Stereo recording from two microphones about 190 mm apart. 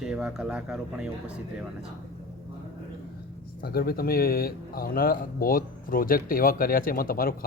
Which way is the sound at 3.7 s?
55° left (ahead or behind).